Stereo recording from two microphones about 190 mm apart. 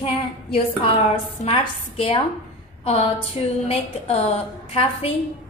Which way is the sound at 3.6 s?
35° left (ahead or behind).